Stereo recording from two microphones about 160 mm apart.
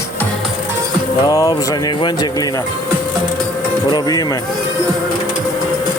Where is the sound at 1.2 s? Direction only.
25° left (ahead or behind).